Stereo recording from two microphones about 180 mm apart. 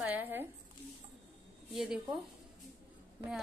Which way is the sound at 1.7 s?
5° right (ahead or behind).